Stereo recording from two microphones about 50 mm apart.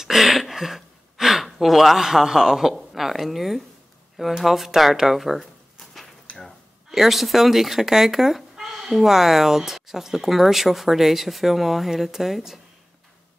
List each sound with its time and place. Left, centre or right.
0.0 s gasp: centre
4.3 s speech: centre
6.3 s a sound: left
6.9 s speech: centre